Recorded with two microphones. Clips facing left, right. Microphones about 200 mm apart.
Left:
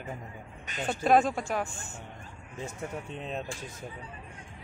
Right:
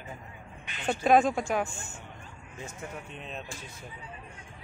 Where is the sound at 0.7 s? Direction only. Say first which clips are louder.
Left 9 dB; 40° left (ahead or behind).